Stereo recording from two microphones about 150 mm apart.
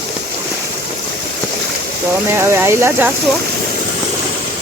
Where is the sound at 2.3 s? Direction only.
15° right (ahead or behind).